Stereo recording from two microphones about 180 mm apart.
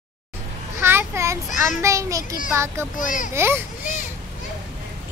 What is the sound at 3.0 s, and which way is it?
Speech, 45° left (ahead or behind).